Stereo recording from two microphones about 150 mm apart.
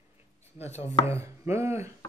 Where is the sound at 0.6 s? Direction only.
45° left (ahead or behind).